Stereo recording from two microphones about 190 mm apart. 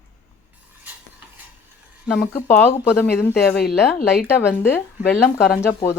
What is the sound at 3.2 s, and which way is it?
Speech, 60° left (ahead or behind).